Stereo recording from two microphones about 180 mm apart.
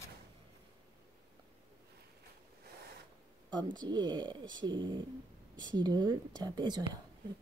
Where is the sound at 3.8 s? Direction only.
25° right (ahead or behind).